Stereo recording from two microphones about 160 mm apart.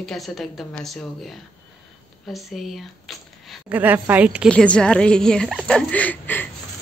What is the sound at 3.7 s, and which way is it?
Speech, 10° right (ahead or behind).